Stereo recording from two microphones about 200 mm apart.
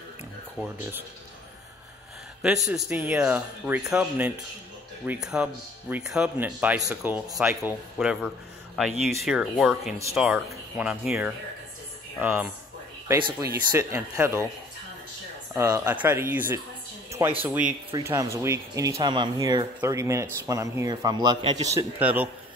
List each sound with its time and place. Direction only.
2.4 s speech: centre (ahead or behind)
15.5 s speech: 20° right (ahead or behind)